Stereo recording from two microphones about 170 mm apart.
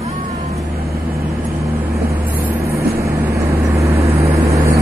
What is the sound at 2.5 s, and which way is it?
Vehicle, 15° right (ahead or behind).